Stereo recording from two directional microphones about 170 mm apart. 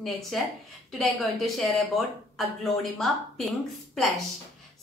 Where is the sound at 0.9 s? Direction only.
Centre (ahead or behind).